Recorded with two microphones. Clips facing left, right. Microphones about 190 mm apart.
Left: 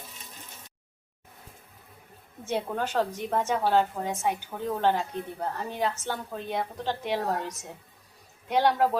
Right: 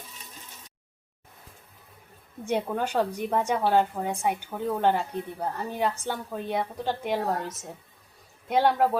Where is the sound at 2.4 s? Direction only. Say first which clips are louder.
Right 2 dB; 10° right (ahead or behind).